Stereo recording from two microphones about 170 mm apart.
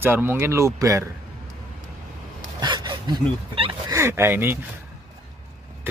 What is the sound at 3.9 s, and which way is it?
Speech, 15° right (ahead or behind).